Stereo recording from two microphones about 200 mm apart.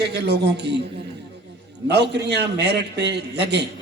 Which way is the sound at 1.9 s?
55° right (ahead or behind).